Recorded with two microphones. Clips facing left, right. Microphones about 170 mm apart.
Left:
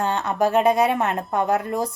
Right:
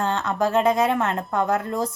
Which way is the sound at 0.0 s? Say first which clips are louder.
Left 1 dB; 15° left (ahead or behind).